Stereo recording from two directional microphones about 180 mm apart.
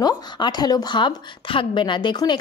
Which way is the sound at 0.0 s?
25° left (ahead or behind).